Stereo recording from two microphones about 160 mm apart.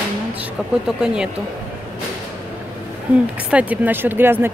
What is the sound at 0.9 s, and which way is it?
Speech, 5° right (ahead or behind).